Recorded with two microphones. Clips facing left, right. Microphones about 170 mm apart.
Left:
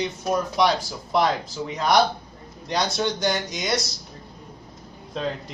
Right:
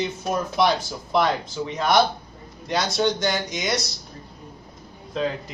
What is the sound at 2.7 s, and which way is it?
Speech, centre (ahead or behind).